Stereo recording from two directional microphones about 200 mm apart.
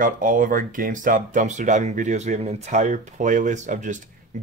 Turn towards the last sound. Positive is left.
turn(degrees=-40)  # may be behind; listen again after turning